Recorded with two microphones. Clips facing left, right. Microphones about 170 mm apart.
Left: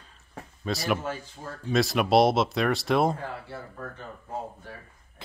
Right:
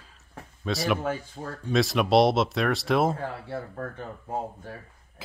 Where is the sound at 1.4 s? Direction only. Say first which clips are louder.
Right 3 dB; 45° right (ahead or behind).